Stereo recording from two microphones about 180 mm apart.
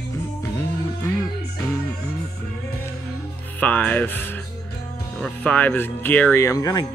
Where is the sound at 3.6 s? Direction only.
10° left (ahead or behind).